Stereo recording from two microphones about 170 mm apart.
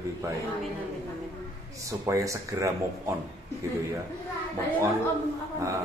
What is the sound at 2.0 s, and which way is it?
Speech, 15° right (ahead or behind).